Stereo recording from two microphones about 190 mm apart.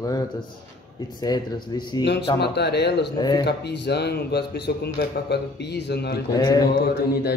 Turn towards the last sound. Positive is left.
turn(degrees=55)  # may be behind; listen again after turning